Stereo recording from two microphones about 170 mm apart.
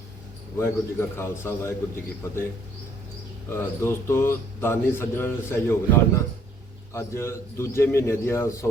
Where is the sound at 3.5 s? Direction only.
15° left (ahead or behind).